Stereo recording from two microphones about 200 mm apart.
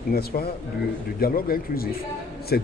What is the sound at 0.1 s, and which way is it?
A man's voice, 50° left (ahead or behind).